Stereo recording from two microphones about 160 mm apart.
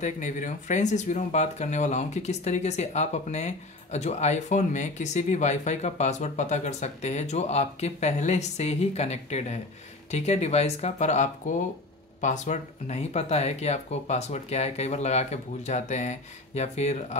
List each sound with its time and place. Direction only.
0.0 s speech: 50° left (ahead or behind)